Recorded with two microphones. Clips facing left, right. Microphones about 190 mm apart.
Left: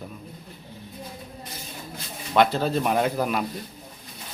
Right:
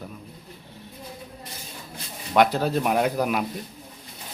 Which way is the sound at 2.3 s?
10° right (ahead or behind).